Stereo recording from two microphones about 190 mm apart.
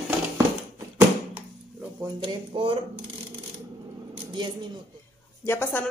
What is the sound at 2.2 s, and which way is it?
Speech, 30° right (ahead or behind).